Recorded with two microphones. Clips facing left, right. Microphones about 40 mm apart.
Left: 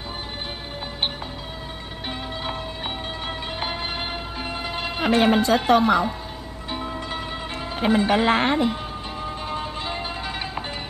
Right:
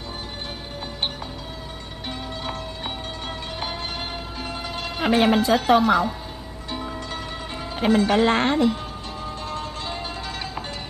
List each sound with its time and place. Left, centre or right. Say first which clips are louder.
2.0 s music: left 1 dB; centre
5.0 s speech: even; centre
6.7 s zither: left 1 dB; centre
7.8 s speech: right 1 dB; centre
9.2 s music: left 1 dB; left